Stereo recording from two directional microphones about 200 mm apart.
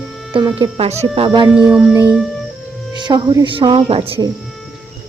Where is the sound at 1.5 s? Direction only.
5° right (ahead or behind).